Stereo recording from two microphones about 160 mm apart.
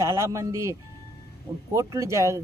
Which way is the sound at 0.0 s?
20° right (ahead or behind).